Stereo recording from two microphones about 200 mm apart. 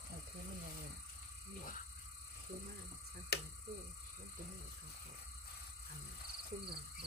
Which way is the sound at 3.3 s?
55° left (ahead or behind).